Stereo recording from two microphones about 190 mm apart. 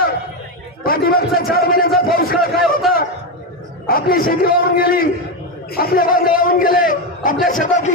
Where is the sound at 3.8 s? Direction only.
50° left (ahead or behind).